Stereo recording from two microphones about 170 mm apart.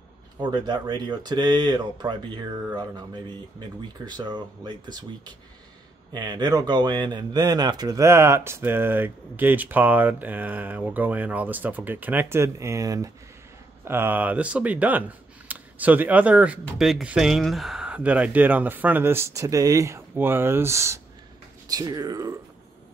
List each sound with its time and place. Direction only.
0.4 s speech: 25° right (ahead or behind)